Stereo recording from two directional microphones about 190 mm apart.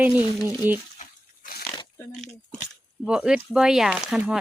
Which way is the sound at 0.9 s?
45° left (ahead or behind).